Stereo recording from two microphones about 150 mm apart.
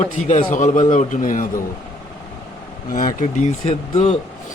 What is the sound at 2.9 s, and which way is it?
Speech, 65° left (ahead or behind).